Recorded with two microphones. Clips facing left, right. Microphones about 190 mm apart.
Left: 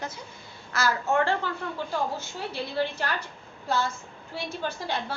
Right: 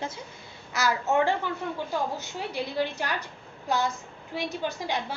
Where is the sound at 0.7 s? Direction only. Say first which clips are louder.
Even; 15° right (ahead or behind).